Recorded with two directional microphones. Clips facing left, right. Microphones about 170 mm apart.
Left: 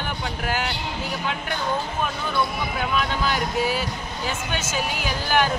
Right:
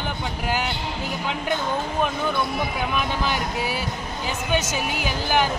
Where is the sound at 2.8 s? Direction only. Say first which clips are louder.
Left 4 dB; 15° right (ahead or behind).